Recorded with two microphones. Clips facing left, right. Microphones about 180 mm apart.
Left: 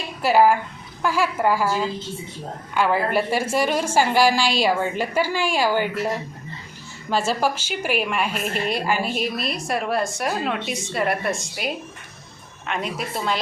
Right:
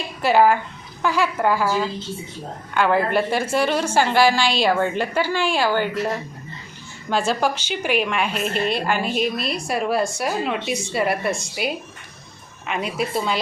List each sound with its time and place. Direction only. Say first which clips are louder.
0.2 s a woman's voice: even; 5° left (ahead or behind)
7.1 s a woman's voice: right 1 dB; 5° left (ahead or behind)